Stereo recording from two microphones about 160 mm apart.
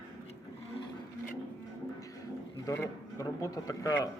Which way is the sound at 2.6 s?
15° left (ahead or behind).